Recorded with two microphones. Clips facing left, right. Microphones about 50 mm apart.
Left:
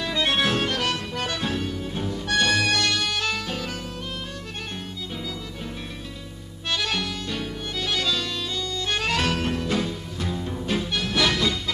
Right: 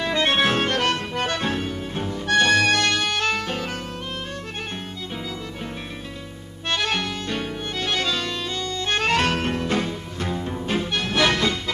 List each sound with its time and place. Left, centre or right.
0.3 s accordion: right
0.7 s accordion: right
1.6 s music: right
3.1 s music: right
3.3 s saxophone: right
6.7 s music: right
8.5 s music: right